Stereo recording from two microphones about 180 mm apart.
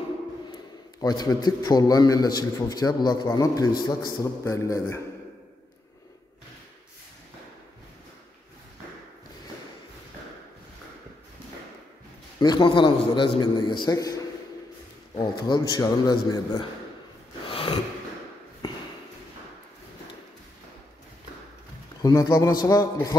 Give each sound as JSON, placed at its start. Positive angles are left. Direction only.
{"t": 0.5, "sound": "a man's voice", "side_deg": 20}
{"t": 12.4, "sound": "a man's voice", "side_deg": 25}
{"t": 17.5, "sound": "a sound", "side_deg": 30}
{"t": 22.0, "sound": "a man's voice", "side_deg": 20}